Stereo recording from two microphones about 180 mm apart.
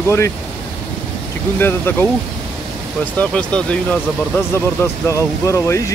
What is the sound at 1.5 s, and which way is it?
Speech, 10° left (ahead or behind).